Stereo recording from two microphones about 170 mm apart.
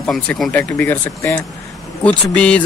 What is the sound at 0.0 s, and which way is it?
Speech, 5° left (ahead or behind).